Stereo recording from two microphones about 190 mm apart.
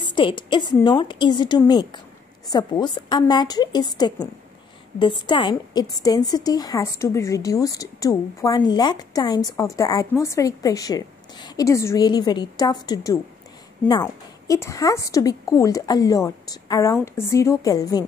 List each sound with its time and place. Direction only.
0.0 s a woman's voice: 25° left (ahead or behind)
14.5 s a woman's voice: 15° left (ahead or behind)